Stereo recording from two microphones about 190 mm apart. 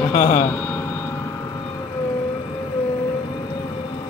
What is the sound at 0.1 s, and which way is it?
Speech, 45° left (ahead or behind).